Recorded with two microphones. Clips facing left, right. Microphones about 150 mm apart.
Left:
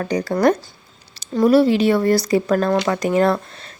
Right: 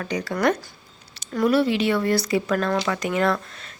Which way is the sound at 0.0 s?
40° left (ahead or behind).